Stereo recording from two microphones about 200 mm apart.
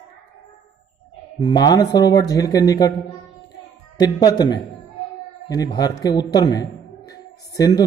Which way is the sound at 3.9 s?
20° left (ahead or behind).